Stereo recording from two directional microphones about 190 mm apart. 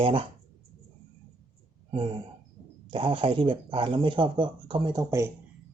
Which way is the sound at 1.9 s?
25° right (ahead or behind).